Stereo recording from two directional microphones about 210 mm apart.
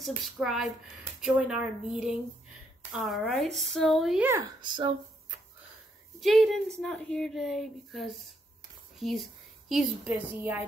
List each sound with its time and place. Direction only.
0.0 s speech: centre (ahead or behind)
4.6 s speech: 20° right (ahead or behind)
6.2 s a woman's voice: centre (ahead or behind)